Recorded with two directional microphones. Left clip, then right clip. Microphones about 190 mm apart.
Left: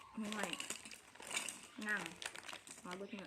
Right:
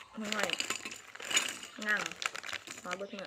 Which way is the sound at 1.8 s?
15° left (ahead or behind).